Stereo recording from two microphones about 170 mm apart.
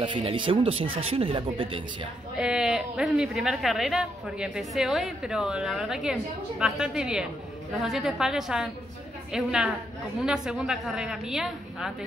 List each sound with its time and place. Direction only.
0.0 s speech: 30° right (ahead or behind)
2.3 s speech: 5° right (ahead or behind)